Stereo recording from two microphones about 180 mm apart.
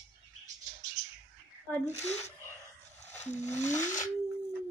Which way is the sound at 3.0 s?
40° left (ahead or behind).